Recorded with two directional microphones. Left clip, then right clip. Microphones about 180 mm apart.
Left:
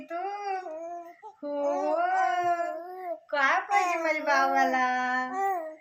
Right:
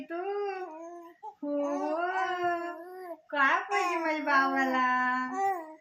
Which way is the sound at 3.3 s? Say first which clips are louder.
Left 1 dB; 70° left (ahead or behind).